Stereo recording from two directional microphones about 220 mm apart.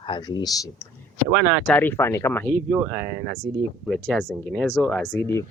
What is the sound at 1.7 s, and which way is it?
Speech, 10° left (ahead or behind).